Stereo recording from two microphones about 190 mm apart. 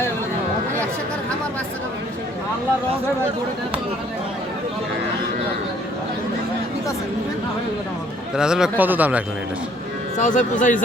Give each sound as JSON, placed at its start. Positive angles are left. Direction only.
{"t": 8.4, "sound": "a man's voice", "side_deg": -5}
{"t": 10.2, "sound": "speech", "side_deg": 40}